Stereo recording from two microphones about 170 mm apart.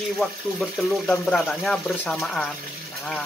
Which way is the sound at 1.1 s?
5° left (ahead or behind).